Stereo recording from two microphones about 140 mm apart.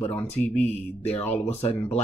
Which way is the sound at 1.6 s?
45° left (ahead or behind).